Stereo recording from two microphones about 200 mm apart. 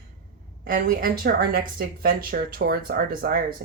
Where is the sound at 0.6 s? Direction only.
45° right (ahead or behind).